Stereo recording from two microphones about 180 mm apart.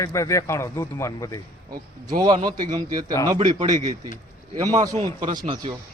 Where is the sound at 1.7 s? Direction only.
20° right (ahead or behind).